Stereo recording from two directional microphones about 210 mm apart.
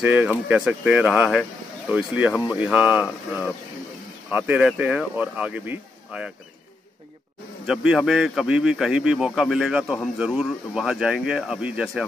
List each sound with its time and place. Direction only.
0.0 s speech: 10° right (ahead or behind)
7.6 s speech: 5° right (ahead or behind)